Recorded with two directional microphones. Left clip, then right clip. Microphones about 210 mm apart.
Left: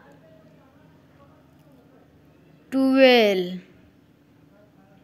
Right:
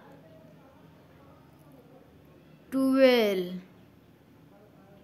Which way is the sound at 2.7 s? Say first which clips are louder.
Left 6 dB; 15° left (ahead or behind).